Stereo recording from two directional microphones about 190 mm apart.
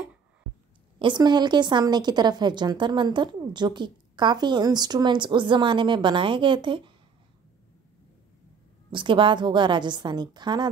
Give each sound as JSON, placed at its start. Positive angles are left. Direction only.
{"t": 0.9, "sound": "a woman's voice", "side_deg": -25}
{"t": 8.9, "sound": "a woman's voice", "side_deg": -25}